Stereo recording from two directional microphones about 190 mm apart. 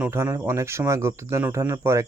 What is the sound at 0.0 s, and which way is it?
Speech, 10° right (ahead or behind).